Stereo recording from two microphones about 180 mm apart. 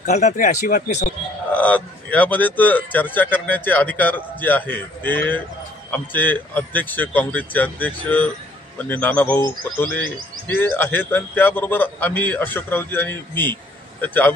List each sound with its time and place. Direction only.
0.0 s speech: 40° left (ahead or behind)
1.5 s speech: 10° left (ahead or behind)